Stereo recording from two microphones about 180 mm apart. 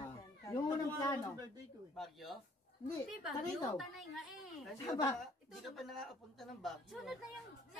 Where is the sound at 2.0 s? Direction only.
Centre (ahead or behind).